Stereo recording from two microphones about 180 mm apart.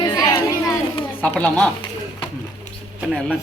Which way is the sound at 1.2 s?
5° left (ahead or behind).